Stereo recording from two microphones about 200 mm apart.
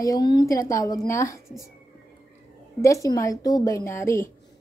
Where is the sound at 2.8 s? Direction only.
15° left (ahead or behind).